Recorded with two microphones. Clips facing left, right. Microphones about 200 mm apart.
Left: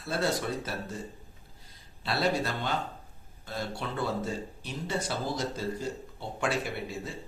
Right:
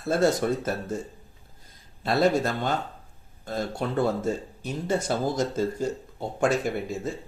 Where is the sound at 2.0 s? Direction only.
45° right (ahead or behind).